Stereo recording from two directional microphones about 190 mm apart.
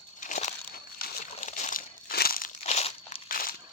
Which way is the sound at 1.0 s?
40° left (ahead or behind).